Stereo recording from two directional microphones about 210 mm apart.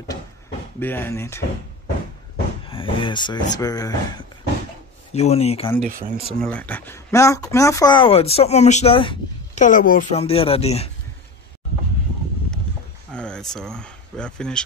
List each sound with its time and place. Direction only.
0.7 s speech: 10° left (ahead or behind)
2.6 s speech: 25° left (ahead or behind)
5.1 s speech: 30° left (ahead or behind)
5.8 s speech: 35° right (ahead or behind)
6.4 s speech: 5° left (ahead or behind); by 9.7 s 25° left (ahead or behind)
9.7 s speech: 40° left (ahead or behind)
13.1 s speech: 5° left (ahead or behind)